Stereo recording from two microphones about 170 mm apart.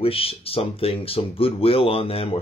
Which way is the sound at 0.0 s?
35° left (ahead or behind).